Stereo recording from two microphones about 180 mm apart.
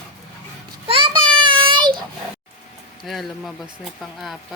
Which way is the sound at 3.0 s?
Centre (ahead or behind).